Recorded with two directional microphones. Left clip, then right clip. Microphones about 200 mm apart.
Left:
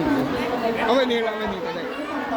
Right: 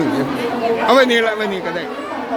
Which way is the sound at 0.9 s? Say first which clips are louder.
Right 9 dB; 35° right (ahead or behind).